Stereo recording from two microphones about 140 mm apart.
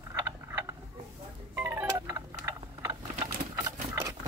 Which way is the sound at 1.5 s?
15° right (ahead or behind).